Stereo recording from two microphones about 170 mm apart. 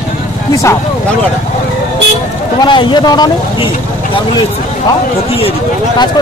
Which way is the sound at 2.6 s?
30° left (ahead or behind).